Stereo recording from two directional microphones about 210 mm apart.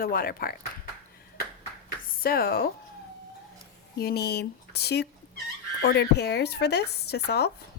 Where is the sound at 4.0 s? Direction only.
50° left (ahead or behind).